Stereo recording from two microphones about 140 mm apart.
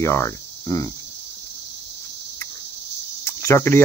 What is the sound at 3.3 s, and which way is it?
Cricket, 20° left (ahead or behind).